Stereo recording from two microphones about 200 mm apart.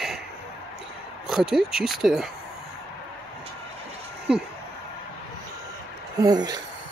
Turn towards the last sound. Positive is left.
turn(degrees=-20)  # may be behind; listen again after turning